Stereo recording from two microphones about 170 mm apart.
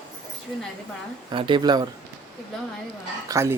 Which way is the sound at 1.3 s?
30° right (ahead or behind).